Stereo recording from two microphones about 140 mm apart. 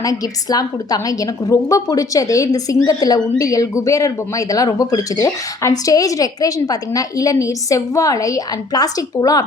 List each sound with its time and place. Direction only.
0.0 s a woman's voice: 25° left (ahead or behind)